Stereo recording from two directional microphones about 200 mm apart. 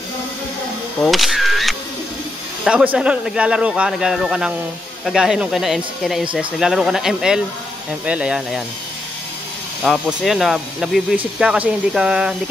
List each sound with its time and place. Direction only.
1.0 s camera: centre (ahead or behind)
2.6 s speech: 5° right (ahead or behind)
9.8 s speech: centre (ahead or behind)